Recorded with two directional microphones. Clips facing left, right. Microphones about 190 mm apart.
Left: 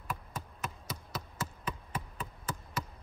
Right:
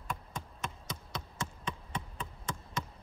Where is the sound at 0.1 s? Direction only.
5° left (ahead or behind).